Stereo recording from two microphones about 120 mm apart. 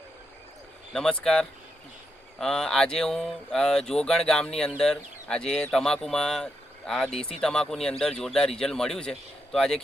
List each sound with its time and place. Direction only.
0.9 s speech: 5° left (ahead or behind)